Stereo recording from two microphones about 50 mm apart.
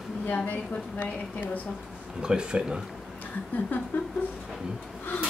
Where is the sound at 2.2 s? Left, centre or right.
Centre.